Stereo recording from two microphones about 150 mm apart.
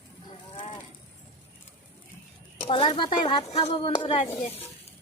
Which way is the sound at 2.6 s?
35° left (ahead or behind).